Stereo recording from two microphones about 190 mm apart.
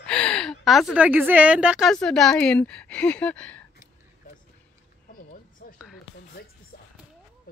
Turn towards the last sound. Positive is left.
turn(degrees=45)  # may be behind; listen again after turning